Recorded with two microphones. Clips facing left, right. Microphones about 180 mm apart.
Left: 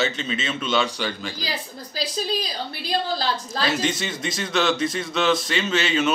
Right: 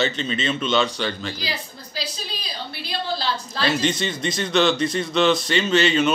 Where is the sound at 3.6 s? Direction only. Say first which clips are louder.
Right 3 dB; 5° left (ahead or behind).